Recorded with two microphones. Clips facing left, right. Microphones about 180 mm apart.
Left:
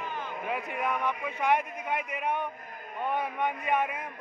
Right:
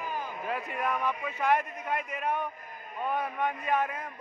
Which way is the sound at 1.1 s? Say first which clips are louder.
Even; 15° left (ahead or behind).